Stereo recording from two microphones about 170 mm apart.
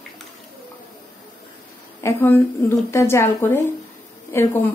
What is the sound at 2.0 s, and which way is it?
A woman's voice, 15° left (ahead or behind).